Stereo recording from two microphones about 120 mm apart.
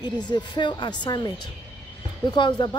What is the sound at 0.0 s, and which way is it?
Speech, 35° left (ahead or behind).